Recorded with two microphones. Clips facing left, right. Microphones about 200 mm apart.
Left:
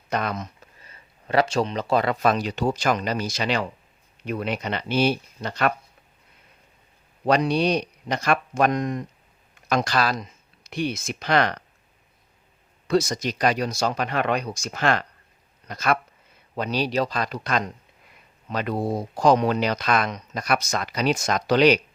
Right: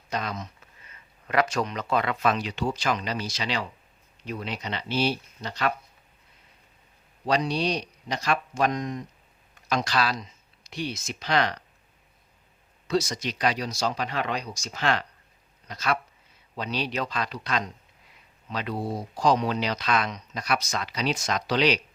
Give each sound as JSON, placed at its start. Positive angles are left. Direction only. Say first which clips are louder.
{"t": 0.1, "sound": "speech", "louder": "left 5 dB", "side_deg": 55}
{"t": 0.8, "sound": "speech", "louder": "left 3 dB", "side_deg": 35}
{"t": 7.3, "sound": "speech", "louder": "left 5 dB", "side_deg": 55}
{"t": 12.9, "sound": "speech", "louder": "left 4 dB", "side_deg": 50}
{"t": 16.6, "sound": "speech", "louder": "left 6 dB", "side_deg": 40}